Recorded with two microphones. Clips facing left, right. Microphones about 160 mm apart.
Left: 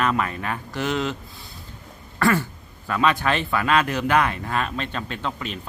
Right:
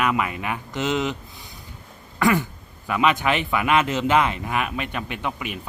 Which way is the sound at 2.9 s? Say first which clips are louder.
Right 1 dB; 15° right (ahead or behind).